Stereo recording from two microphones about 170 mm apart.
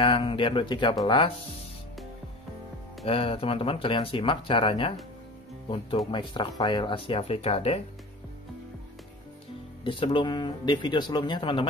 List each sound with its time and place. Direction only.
0.0 s speech: 30° left (ahead or behind)
3.1 s speech: 35° left (ahead or behind)
6.1 s speech: 30° left (ahead or behind)
9.8 s speech: 30° left (ahead or behind)